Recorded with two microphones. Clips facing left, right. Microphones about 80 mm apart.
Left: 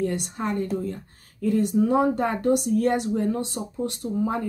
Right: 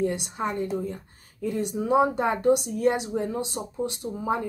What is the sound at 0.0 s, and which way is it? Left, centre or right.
Speech, centre.